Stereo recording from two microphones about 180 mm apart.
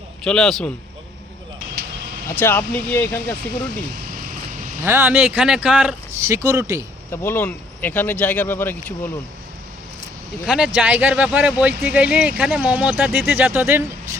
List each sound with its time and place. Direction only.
0.3 s a man's voice: 5° left (ahead or behind)
2.4 s speech: 10° left (ahead or behind)
4.8 s speech: 15° right (ahead or behind)
6.2 s speech: 15° right (ahead or behind)
7.1 s speech: 15° left (ahead or behind)
10.4 s a man's voice: 5° right (ahead or behind)